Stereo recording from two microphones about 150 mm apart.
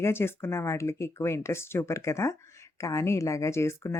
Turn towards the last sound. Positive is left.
turn(degrees=20)  # may be behind; listen again after turning